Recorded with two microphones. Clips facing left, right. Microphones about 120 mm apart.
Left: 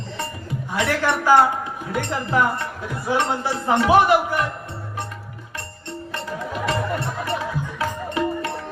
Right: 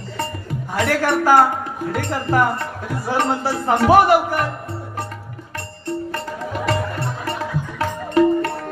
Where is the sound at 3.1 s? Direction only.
45° right (ahead or behind).